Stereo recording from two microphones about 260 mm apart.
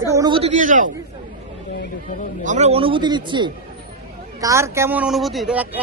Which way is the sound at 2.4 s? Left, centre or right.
Right.